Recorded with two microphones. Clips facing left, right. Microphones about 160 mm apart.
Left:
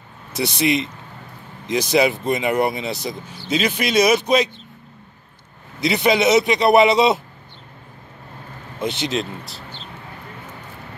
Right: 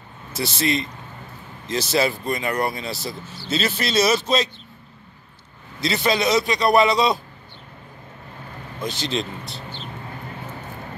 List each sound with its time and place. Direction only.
0.3 s speech: 20° left (ahead or behind)
5.8 s speech: 20° left (ahead or behind)
8.8 s speech: 20° left (ahead or behind)
9.1 s speech: centre (ahead or behind)